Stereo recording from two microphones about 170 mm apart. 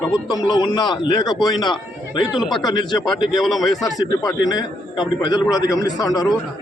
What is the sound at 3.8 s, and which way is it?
A man's voice, 20° left (ahead or behind).